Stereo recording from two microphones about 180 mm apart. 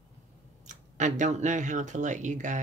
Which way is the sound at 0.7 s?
45° right (ahead or behind).